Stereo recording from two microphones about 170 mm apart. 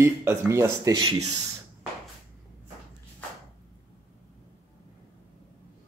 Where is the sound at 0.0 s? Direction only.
15° right (ahead or behind).